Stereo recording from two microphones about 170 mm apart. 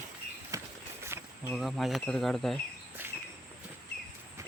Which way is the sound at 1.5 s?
Centre (ahead or behind).